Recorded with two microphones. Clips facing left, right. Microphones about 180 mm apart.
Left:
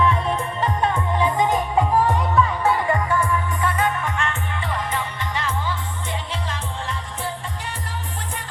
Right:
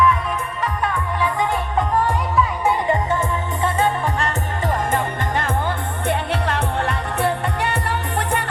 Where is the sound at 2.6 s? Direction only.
20° right (ahead or behind).